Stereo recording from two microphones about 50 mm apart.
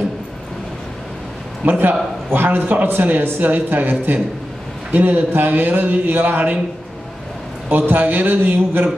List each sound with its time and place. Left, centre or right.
1.6 s speech: right
7.7 s speech: right